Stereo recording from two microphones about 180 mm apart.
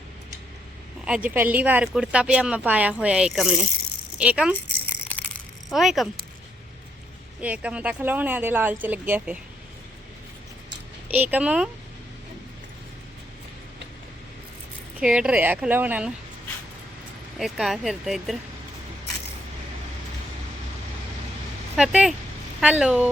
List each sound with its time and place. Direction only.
1.0 s speech: 5° right (ahead or behind)
5.0 s a sound: 5° left (ahead or behind)
7.4 s speech: 5° right (ahead or behind)
11.1 s speech: 10° right (ahead or behind)
15.0 s speech: 5° right (ahead or behind)
17.3 s speech: centre (ahead or behind)
21.8 s speech: 5° right (ahead or behind)